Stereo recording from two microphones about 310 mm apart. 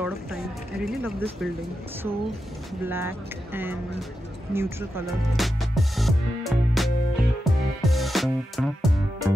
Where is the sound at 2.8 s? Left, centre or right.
Centre.